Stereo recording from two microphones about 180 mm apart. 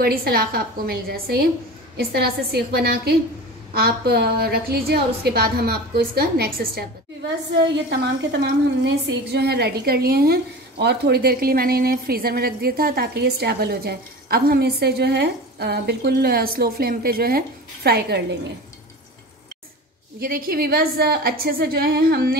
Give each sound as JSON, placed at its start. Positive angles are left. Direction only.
{"t": 0.0, "sound": "a woman's voice", "side_deg": -55}
{"t": 20.2, "sound": "a woman's voice", "side_deg": -55}